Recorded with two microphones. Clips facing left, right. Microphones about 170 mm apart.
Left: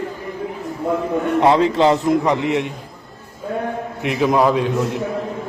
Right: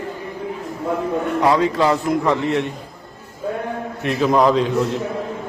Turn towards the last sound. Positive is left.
turn(degrees=5)  # may be behind; listen again after turning